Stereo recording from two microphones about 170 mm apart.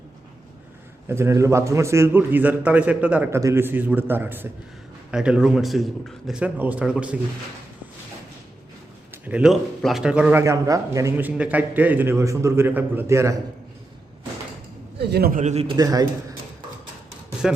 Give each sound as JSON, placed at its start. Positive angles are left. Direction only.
{"t": 1.0, "sound": "a man's voice", "side_deg": -15}
{"t": 9.2, "sound": "a man's voice", "side_deg": -5}
{"t": 10.4, "sound": "a man's voice", "side_deg": -20}
{"t": 14.9, "sound": "a man's voice", "side_deg": -70}
{"t": 15.6, "sound": "a man's voice", "side_deg": -25}
{"t": 17.4, "sound": "speech", "side_deg": -5}